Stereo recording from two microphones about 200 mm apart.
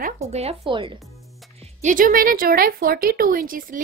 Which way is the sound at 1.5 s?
35° right (ahead or behind).